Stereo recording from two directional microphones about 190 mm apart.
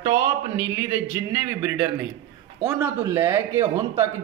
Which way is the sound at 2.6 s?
10° right (ahead or behind).